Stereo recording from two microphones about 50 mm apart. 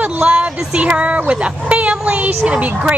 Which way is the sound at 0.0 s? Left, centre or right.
Right.